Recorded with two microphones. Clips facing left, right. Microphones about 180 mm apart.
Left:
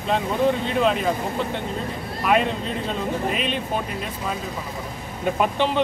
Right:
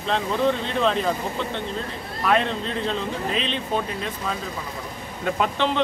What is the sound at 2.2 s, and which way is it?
Speech, 10° left (ahead or behind).